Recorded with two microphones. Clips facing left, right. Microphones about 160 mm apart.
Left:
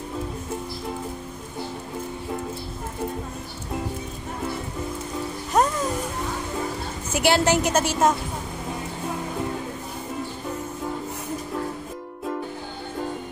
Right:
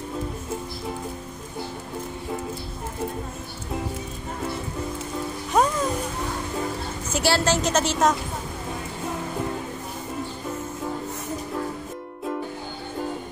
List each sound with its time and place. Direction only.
5.5 s music: centre (ahead or behind)
7.1 s a woman's voice: 15° left (ahead or behind)